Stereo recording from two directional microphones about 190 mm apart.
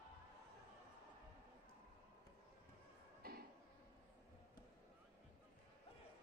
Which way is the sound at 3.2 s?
50° right (ahead or behind).